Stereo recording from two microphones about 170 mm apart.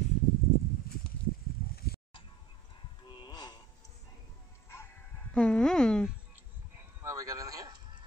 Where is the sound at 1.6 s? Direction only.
60° left (ahead or behind).